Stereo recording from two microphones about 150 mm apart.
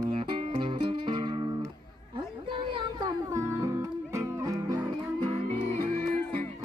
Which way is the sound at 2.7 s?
25° right (ahead or behind).